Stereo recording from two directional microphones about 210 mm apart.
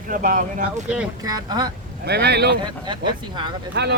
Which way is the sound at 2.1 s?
50° right (ahead or behind).